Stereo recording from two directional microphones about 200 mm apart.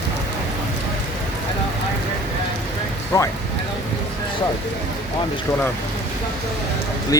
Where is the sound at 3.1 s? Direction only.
15° left (ahead or behind).